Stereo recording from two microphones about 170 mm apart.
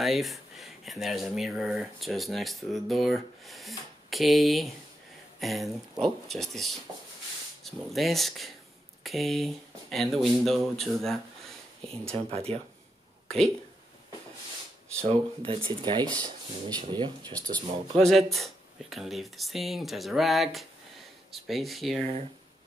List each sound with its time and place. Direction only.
0.0 s speech: centre (ahead or behind)
12.1 s speech: 35° right (ahead or behind)
15.0 s speech: 35° right (ahead or behind)
18.0 s speech: centre (ahead or behind)